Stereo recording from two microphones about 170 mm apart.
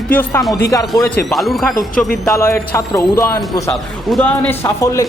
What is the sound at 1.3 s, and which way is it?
Speech, centre (ahead or behind).